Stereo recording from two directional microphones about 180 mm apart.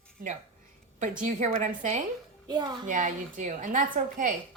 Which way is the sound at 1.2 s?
40° right (ahead or behind).